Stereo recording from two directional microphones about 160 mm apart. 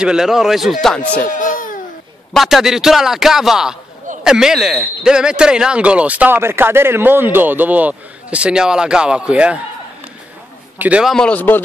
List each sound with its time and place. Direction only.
0.0 s a man's voice: 5° right (ahead or behind)
1.2 s baby cry: 55° left (ahead or behind)
2.3 s a man's voice: centre (ahead or behind)
10.8 s a man's voice: 5° right (ahead or behind)
11.1 s speech: 10° left (ahead or behind)